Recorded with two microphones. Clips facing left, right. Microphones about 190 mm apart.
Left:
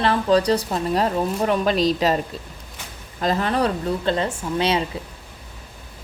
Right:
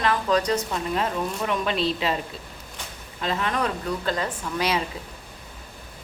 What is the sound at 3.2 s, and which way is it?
Speech, 35° left (ahead or behind).